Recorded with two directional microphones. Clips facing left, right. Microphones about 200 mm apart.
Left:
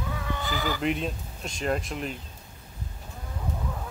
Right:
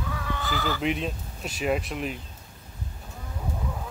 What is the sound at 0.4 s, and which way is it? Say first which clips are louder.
Speech: right 1 dB; 15° left (ahead or behind).